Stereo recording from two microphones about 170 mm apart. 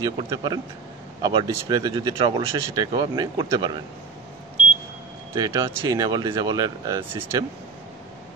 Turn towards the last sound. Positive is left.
turn(degrees=-15)  # may be behind; listen again after turning